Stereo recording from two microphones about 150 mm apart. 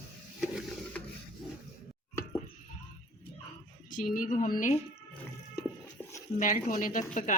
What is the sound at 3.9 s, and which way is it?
Speech, 65° left (ahead or behind).